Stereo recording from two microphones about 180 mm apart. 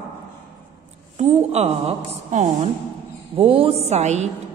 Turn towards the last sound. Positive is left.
turn(degrees=-40)  # may be behind; listen again after turning